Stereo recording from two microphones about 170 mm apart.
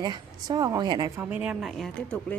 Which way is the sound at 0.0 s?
25° right (ahead or behind).